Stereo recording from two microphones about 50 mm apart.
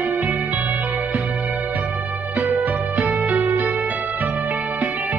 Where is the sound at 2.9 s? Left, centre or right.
Right.